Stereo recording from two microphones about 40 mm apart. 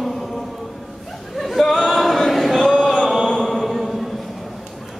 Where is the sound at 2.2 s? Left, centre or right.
Centre.